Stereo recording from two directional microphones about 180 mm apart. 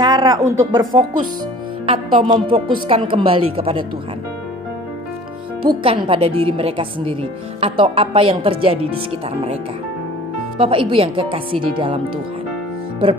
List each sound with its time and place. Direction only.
0.0 s a sound: 20° right (ahead or behind)
0.5 s speech: 15° right (ahead or behind)
1.9 s speech: 30° right (ahead or behind)
5.6 s speech: 25° right (ahead or behind)
10.6 s speech: 30° right (ahead or behind)